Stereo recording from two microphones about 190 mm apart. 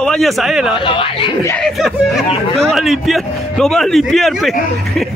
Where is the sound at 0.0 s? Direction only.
5° left (ahead or behind).